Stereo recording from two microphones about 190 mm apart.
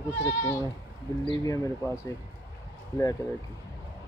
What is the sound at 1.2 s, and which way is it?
Speech, 20° left (ahead or behind).